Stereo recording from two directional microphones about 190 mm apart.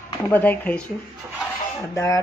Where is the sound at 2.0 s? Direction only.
15° left (ahead or behind).